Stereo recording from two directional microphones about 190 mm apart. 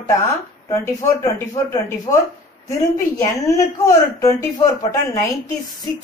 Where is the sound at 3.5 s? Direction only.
15° left (ahead or behind).